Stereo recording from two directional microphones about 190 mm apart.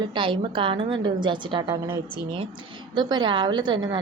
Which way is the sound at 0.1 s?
25° right (ahead or behind).